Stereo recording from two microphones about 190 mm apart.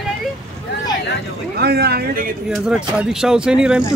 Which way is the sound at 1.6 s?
55° right (ahead or behind).